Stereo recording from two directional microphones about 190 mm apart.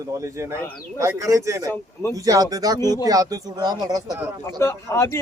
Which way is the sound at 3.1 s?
20° right (ahead or behind).